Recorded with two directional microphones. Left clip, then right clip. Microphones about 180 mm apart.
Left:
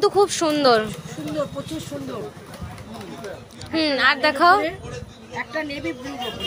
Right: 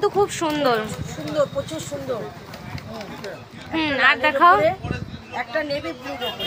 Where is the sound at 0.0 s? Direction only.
20° left (ahead or behind).